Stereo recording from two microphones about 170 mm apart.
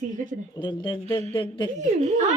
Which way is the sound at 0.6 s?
25° left (ahead or behind).